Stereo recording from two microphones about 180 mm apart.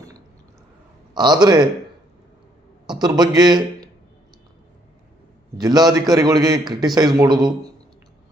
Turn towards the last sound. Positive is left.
turn(degrees=-25)  # may be behind; listen again after turning